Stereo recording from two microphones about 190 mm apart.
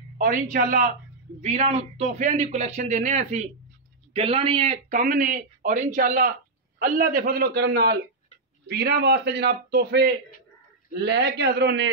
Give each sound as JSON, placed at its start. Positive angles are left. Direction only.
{"t": 0.2, "sound": "a man's voice", "side_deg": -45}